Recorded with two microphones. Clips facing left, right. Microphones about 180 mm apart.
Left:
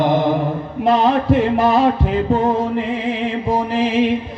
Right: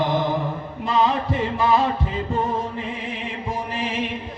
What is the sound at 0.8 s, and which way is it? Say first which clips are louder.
Music: left 7 dB; 70° left (ahead or behind).